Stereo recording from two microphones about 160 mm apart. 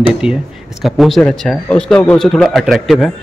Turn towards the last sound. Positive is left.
turn(degrees=0)  # may be behind; listen again after turning